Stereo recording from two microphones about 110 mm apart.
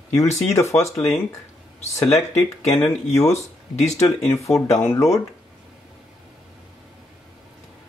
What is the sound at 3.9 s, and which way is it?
Speech, 25° left (ahead or behind).